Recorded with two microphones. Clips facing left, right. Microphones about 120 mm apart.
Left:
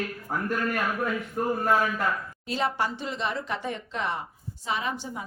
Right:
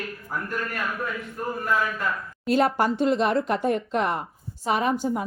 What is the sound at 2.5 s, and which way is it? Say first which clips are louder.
A woman's voice: right 7 dB; 55° right (ahead or behind).